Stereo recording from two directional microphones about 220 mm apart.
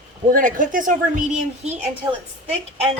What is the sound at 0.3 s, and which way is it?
A woman's voice, 40° right (ahead or behind).